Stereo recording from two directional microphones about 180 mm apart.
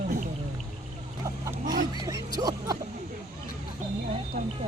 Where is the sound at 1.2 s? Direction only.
15° right (ahead or behind).